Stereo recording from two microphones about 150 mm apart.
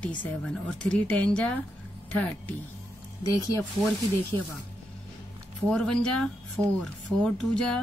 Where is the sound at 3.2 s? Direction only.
25° left (ahead or behind).